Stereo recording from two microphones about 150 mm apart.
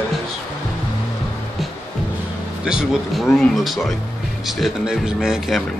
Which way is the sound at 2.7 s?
5° right (ahead or behind).